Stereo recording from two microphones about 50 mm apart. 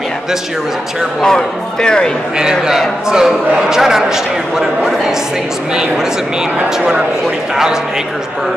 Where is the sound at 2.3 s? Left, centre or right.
Centre.